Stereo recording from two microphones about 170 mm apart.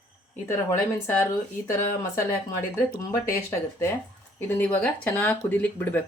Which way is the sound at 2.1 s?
15° left (ahead or behind).